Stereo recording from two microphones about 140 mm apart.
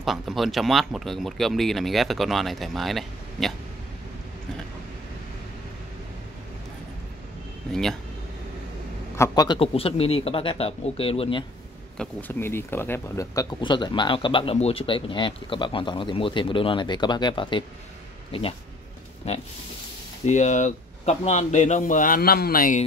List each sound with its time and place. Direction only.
0.0 s speech: centre (ahead or behind)
9.1 s a man's voice: 25° left (ahead or behind)
9.6 s speech: 45° left (ahead or behind)
12.0 s speech: 10° left (ahead or behind); by 17.6 s 35° left (ahead or behind)
19.2 s pig: 50° left (ahead or behind)
20.2 s speech: 60° left (ahead or behind); by 22.8 s 85° left